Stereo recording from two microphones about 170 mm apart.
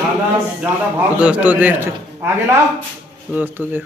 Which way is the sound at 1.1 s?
10° right (ahead or behind).